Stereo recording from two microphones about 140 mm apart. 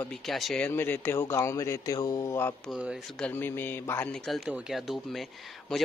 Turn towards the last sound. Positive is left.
turn(degrees=0)  # may be behind; listen again after turning